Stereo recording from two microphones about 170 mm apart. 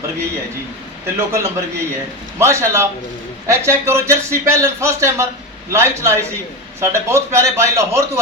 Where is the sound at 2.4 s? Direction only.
15° right (ahead or behind).